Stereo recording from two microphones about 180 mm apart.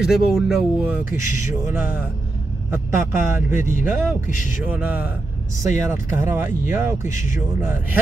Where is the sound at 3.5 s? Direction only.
45° left (ahead or behind).